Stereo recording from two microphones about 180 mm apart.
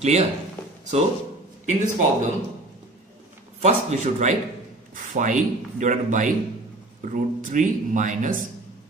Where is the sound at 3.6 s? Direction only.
40° right (ahead or behind).